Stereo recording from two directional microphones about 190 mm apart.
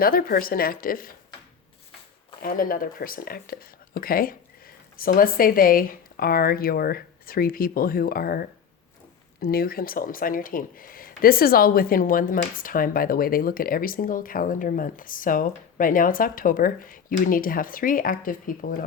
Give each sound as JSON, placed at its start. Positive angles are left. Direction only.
{"t": 0.0, "sound": "speech", "side_deg": 50}
{"t": 2.4, "sound": "speech", "side_deg": 50}